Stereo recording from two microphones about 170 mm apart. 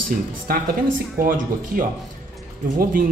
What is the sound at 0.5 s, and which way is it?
Speech, 60° right (ahead or behind).